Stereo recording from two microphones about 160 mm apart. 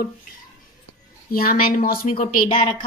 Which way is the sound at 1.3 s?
65° left (ahead or behind).